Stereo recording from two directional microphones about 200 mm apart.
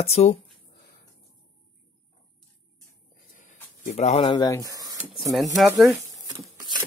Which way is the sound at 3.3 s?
40° left (ahead or behind).